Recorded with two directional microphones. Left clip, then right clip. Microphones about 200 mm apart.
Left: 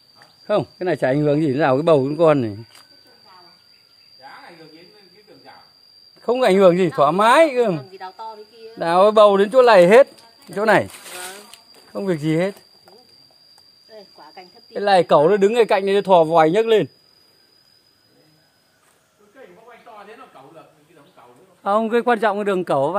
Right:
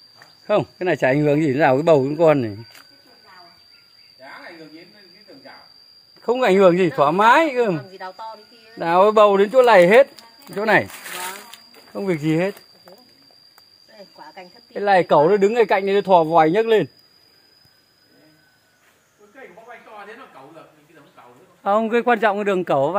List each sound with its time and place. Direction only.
0.5 s speech: 5° left (ahead or behind)
6.2 s speech: 15° left (ahead or behind)
7.8 s a woman's voice: 25° right (ahead or behind)
8.7 s speech: 15° left (ahead or behind)
12.0 s speech: 10° left (ahead or behind)
13.9 s a sound: 15° right (ahead or behind)
14.7 s speech: 15° left (ahead or behind)
21.6 s speech: 10° left (ahead or behind)